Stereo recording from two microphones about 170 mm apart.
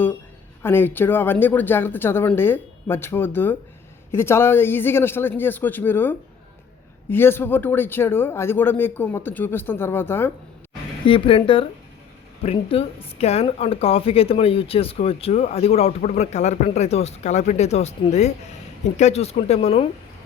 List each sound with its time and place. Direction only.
0.6 s speech: 10° left (ahead or behind)
11.0 s a woman's voice: 30° left (ahead or behind)